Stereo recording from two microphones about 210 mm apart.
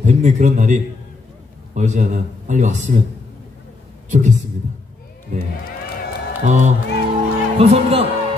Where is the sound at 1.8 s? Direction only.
35° right (ahead or behind).